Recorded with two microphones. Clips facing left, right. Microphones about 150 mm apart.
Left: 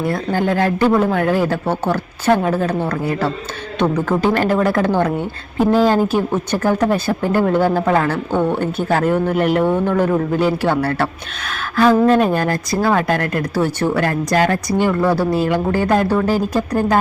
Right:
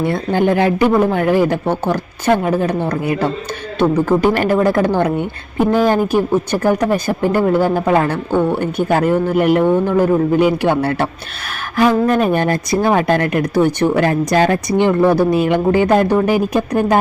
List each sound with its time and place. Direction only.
0.0 s speech: 20° right (ahead or behind)